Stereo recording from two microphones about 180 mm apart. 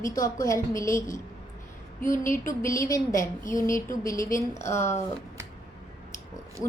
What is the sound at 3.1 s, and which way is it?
Speech, 45° left (ahead or behind).